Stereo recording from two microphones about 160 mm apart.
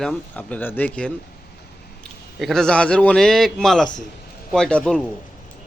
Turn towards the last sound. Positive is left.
turn(degrees=5)  # may be behind; listen again after turning